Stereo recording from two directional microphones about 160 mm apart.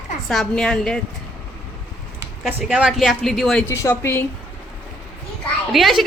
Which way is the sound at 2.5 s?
10° right (ahead or behind).